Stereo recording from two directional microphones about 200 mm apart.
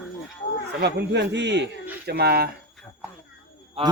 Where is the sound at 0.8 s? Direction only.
60° right (ahead or behind).